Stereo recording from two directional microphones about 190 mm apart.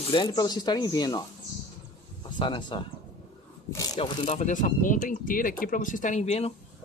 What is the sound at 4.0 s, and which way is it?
Speech, 40° left (ahead or behind).